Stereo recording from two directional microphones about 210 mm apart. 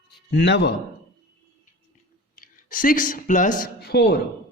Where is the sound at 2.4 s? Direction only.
40° left (ahead or behind).